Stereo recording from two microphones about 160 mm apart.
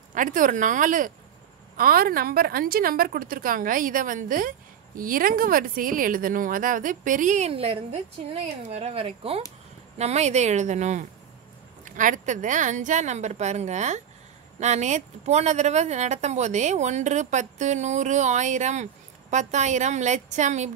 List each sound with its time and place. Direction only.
0.1 s a woman's voice: 55° right (ahead or behind)
1.8 s a woman's voice: 65° right (ahead or behind); by 20.7 s 45° right (ahead or behind)